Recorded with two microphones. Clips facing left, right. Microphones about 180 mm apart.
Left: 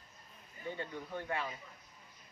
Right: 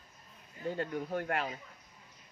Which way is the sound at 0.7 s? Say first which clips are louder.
Right 7 dB; 80° right.